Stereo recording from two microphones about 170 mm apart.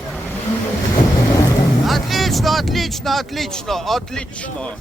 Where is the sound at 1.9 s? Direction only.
Centre (ahead or behind).